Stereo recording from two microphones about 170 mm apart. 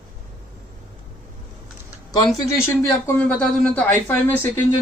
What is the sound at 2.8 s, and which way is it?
Speech, 10° left (ahead or behind).